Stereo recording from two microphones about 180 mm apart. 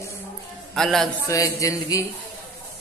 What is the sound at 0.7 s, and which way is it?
Speech, centre (ahead or behind).